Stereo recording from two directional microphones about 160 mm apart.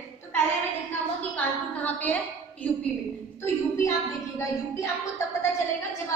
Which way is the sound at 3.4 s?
20° left (ahead or behind).